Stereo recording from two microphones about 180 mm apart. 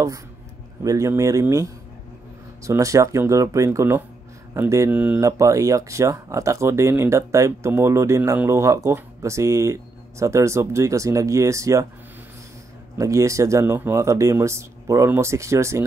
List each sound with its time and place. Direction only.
0.8 s speech: 20° right (ahead or behind)
12.9 s speech: 15° right (ahead or behind)